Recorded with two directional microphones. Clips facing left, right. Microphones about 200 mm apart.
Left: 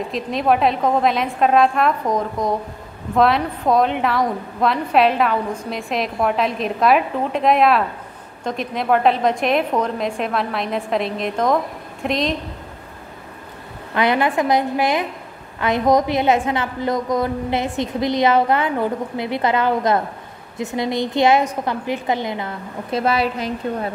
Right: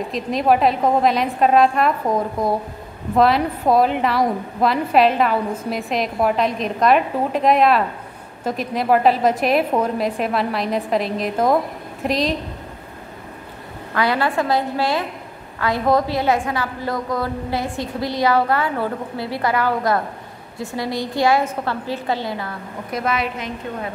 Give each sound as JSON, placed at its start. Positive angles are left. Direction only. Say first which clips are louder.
{"t": 0.1, "sound": "a woman's voice", "louder": "right 1 dB", "side_deg": 0}
{"t": 13.9, "sound": "a woman's voice", "louder": "left 2 dB", "side_deg": 20}